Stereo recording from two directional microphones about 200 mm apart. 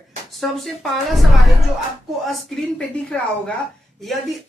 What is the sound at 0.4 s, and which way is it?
Speech, centre (ahead or behind).